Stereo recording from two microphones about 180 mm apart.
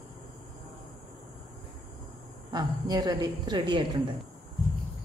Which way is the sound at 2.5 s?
20° right (ahead or behind).